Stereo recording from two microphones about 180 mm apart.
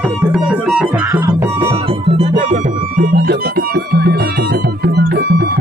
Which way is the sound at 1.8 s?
35° right (ahead or behind).